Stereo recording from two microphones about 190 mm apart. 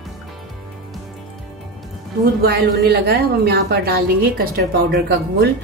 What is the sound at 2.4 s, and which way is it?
A woman's voice, 55° right (ahead or behind).